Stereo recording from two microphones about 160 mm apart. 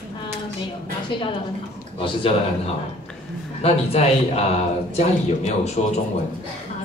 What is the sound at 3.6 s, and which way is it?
A man's voice, 40° left (ahead or behind).